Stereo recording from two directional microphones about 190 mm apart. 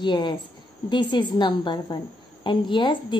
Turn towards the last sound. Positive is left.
turn(degrees=25)  # may be behind; listen again after turning